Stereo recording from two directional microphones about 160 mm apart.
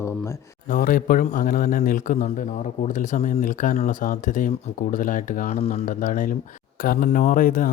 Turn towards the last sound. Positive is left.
turn(degrees=60)  # may be behind; listen again after turning